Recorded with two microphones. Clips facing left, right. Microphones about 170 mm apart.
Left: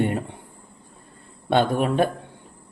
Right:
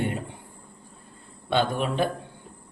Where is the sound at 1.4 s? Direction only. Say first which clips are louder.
Left 4 dB; 55° left (ahead or behind).